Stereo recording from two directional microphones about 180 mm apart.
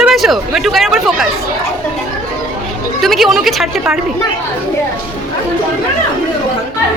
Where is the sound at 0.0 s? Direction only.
Centre (ahead or behind).